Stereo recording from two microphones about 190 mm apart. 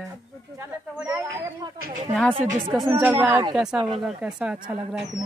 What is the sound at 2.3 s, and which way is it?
Speech, 30° right (ahead or behind).